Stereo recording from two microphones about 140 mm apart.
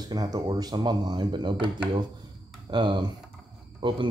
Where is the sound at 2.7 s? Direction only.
35° right (ahead or behind).